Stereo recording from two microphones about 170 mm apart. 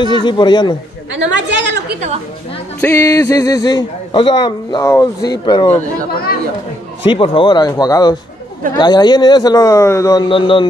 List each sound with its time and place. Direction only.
0.2 s a man's voice: 25° left (ahead or behind)
1.1 s a woman's voice: 90° right
2.8 s a man's voice: 15° left (ahead or behind)
7.1 s a man's voice: 30° left (ahead or behind)